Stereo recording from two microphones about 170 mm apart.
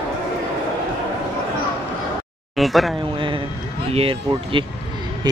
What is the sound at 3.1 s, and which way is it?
Speech, 30° right (ahead or behind).